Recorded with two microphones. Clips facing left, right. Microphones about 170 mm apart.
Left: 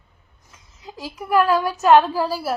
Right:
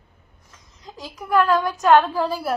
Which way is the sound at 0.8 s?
10° left (ahead or behind).